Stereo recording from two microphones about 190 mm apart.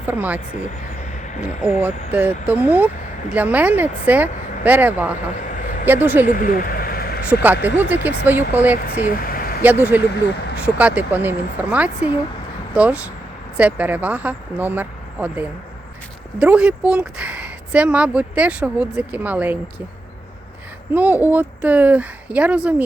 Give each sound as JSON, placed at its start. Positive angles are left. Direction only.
{"t": 0.0, "sound": "speech", "side_deg": -10}
{"t": 1.6, "sound": "speech", "side_deg": -5}
{"t": 6.2, "sound": "a sound", "side_deg": 45}
{"t": 7.3, "sound": "speech", "side_deg": -10}
{"t": 8.7, "sound": "speech", "side_deg": 45}
{"t": 9.6, "sound": "speech", "side_deg": -10}
{"t": 20.9, "sound": "speech", "side_deg": -10}